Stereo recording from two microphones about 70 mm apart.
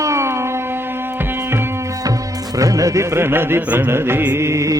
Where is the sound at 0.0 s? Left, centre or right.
Right.